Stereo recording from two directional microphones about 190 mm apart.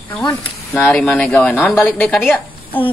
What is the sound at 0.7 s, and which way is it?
A woman's voice, 10° left (ahead or behind).